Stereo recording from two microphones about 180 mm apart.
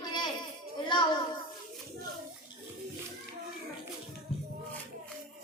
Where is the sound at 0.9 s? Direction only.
25° left (ahead or behind).